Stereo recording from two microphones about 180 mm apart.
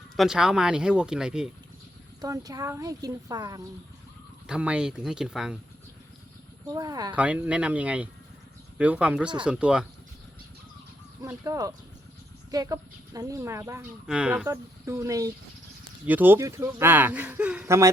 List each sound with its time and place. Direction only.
0.2 s speech: 5° right (ahead or behind)
2.2 s speech: 20° right (ahead or behind)
4.4 s speech: 5° right (ahead or behind)
6.7 s speech: 20° right (ahead or behind)
7.1 s speech: 10° right (ahead or behind)
11.2 s speech: 15° right (ahead or behind)